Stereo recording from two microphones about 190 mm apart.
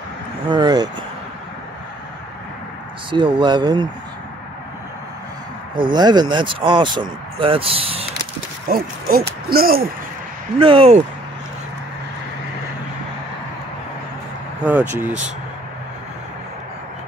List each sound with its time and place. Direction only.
0.5 s speech: 20° right (ahead or behind)
3.1 s speech: 25° right (ahead or behind)
5.9 s speech: 20° right (ahead or behind)
8.6 s a sound: 50° right (ahead or behind)
9.5 s speech: 50° right (ahead or behind)
10.6 s speech: 30° right (ahead or behind)
14.6 s speech: 10° right (ahead or behind)